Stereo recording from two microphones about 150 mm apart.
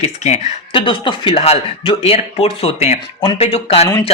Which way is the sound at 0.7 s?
35° left (ahead or behind).